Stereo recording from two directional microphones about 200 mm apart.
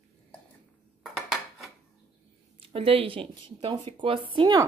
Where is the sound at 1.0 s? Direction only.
Centre (ahead or behind).